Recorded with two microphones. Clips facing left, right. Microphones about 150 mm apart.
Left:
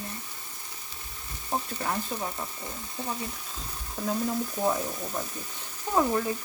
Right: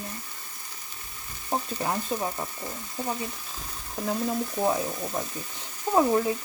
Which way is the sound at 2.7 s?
15° right (ahead or behind).